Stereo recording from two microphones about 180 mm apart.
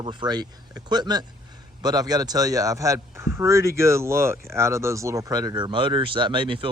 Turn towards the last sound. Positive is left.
turn(degrees=-25)  # may be behind; listen again after turning